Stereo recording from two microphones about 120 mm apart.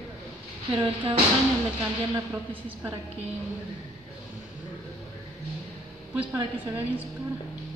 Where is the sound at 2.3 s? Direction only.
15° right (ahead or behind).